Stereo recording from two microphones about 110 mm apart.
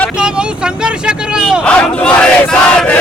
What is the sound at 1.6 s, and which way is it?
Speech, 10° left (ahead or behind).